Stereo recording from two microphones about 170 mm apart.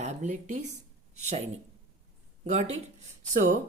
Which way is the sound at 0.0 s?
45° right (ahead or behind).